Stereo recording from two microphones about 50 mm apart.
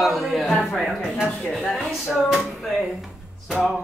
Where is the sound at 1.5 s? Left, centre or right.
Centre.